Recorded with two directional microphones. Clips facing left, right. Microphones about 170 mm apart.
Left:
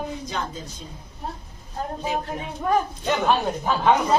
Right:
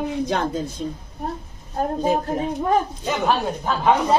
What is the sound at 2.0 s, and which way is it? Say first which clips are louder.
Speech: right 7 dB; 40° right (ahead or behind).